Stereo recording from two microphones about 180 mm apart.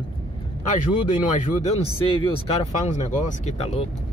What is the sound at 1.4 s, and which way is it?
Speech, 40° left (ahead or behind).